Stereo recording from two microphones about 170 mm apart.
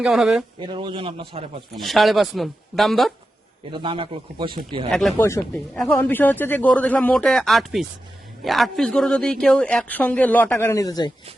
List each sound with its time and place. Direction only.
0.0 s speech: centre (ahead or behind)
0.6 s speech: 30° right (ahead or behind)
1.7 s speech: centre (ahead or behind)
3.7 s speech: 30° right (ahead or behind)
4.9 s speech: centre (ahead or behind)
5.1 s a man's voice: 15° left (ahead or behind)